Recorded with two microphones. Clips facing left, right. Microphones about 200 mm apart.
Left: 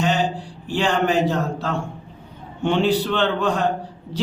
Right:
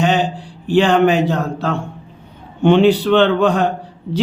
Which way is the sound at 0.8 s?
60° right (ahead or behind).